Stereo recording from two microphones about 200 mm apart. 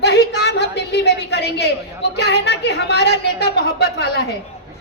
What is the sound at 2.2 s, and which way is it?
A woman's voice, 55° left (ahead or behind).